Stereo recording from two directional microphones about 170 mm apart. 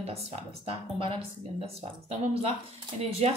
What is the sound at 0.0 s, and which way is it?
Speech, 35° right (ahead or behind).